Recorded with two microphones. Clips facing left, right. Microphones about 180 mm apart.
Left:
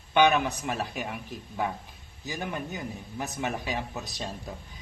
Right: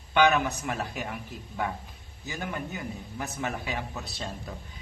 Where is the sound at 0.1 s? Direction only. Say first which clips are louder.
Left 1 dB; 15° left (ahead or behind).